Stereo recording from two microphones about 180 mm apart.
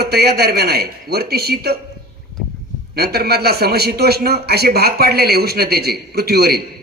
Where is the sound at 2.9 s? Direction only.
60° right (ahead or behind).